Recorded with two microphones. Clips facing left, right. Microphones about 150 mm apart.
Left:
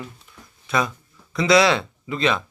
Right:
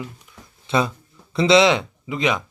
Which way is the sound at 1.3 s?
25° right (ahead or behind).